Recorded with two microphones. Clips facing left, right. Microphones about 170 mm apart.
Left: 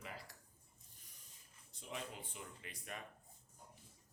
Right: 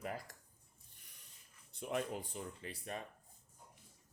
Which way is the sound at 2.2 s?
35° right (ahead or behind).